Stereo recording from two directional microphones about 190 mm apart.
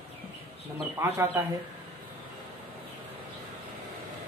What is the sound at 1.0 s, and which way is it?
Speech, 15° right (ahead or behind).